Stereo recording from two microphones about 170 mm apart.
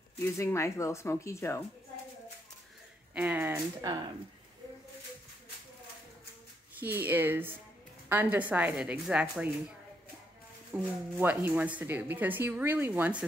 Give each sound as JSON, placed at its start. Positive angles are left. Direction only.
{"t": 0.4, "sound": "speech", "side_deg": 15}
{"t": 3.2, "sound": "speech", "side_deg": -10}
{"t": 6.8, "sound": "speech", "side_deg": -10}
{"t": 10.7, "sound": "speech", "side_deg": -10}